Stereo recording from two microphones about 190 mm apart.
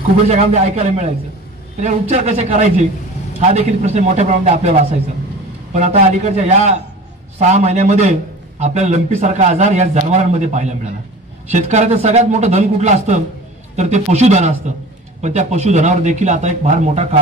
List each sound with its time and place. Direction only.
0.3 s a man's voice: 35° right (ahead or behind)